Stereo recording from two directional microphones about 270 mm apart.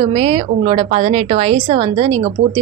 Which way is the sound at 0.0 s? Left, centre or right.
Centre.